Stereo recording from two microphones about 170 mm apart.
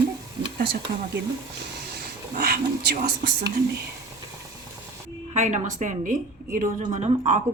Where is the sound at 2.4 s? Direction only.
65° right (ahead or behind).